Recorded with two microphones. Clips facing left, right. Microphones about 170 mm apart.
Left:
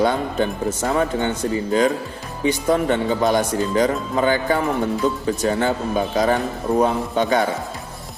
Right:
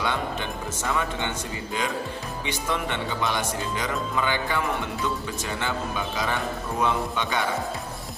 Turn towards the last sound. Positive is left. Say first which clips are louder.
# left 8 dB
turn(degrees=40)  # may be behind; listen again after turning